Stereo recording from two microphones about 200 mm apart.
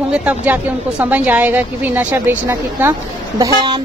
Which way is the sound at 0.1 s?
5° right (ahead or behind).